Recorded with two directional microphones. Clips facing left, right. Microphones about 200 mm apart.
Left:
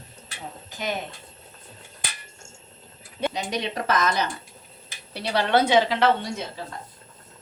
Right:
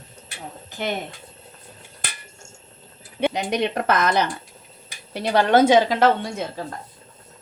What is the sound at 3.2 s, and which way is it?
A woman's voice, 60° right (ahead or behind).